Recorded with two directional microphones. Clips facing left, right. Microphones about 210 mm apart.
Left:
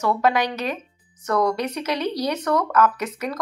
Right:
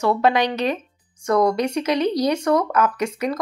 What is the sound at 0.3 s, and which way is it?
Speech, 10° left (ahead or behind).